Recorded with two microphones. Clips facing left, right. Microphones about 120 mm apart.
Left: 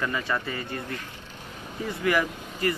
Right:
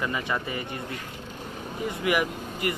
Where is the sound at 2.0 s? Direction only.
15° right (ahead or behind).